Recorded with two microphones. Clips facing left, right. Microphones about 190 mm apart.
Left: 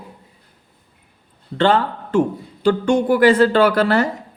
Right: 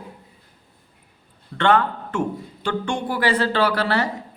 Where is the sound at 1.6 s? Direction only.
30° left (ahead or behind).